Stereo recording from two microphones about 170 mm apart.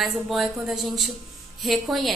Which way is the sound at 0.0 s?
Centre (ahead or behind).